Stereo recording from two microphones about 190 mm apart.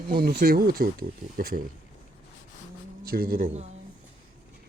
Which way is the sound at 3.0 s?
50° right (ahead or behind).